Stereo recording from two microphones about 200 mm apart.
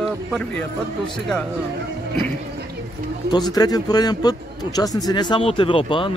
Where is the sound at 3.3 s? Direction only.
20° left (ahead or behind).